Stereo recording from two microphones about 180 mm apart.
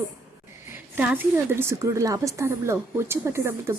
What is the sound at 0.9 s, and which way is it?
A woman's voice, 10° right (ahead or behind).